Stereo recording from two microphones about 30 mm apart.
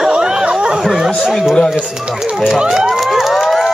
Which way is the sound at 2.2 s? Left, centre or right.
Centre.